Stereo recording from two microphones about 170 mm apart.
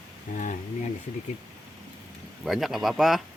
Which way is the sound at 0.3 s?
45° left (ahead or behind).